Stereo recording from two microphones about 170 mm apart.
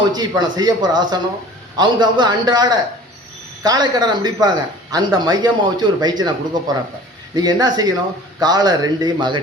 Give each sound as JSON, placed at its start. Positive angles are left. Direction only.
{"t": 0.1, "sound": "speech", "side_deg": -25}